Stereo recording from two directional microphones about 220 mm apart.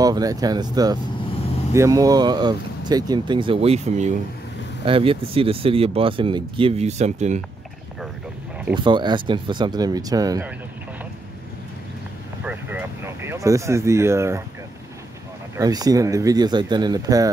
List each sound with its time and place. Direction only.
0.0 s speech: 15° right (ahead or behind); by 7.4 s 30° right (ahead or behind)
8.7 s speech: 20° right (ahead or behind)
12.4 s speech: 10° right (ahead or behind)
15.5 s speech: 15° right (ahead or behind)